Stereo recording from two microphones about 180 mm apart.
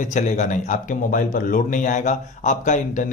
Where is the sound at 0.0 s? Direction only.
45° left (ahead or behind).